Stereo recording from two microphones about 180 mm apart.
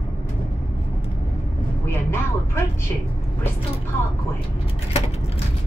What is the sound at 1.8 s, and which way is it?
Vehicle, 15° left (ahead or behind).